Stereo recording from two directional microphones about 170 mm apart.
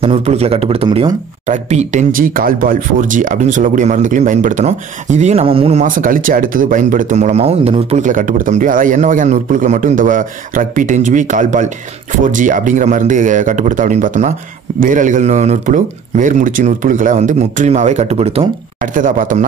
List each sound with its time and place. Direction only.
0.0 s speech: 40° right (ahead or behind)
1.4 s speech: 40° right (ahead or behind)
5.9 s speech: 55° right (ahead or behind); by 18.9 s 35° right (ahead or behind)
18.9 s speech: 50° right (ahead or behind)